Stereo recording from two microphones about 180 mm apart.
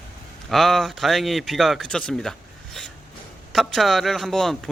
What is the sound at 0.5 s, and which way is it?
A man's voice, centre (ahead or behind).